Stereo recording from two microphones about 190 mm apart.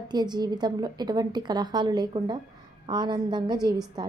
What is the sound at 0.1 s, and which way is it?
A woman's voice, 20° right (ahead or behind).